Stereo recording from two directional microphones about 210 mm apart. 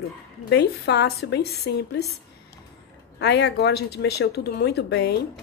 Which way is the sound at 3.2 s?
55° left (ahead or behind).